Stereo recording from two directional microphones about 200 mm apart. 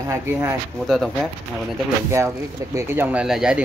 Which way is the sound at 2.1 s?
15° right (ahead or behind).